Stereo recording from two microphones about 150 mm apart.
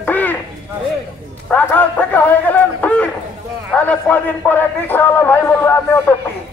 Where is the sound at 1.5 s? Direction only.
10° left (ahead or behind).